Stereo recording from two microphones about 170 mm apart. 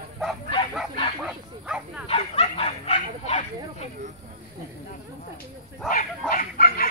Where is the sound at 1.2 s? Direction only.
5° right (ahead or behind).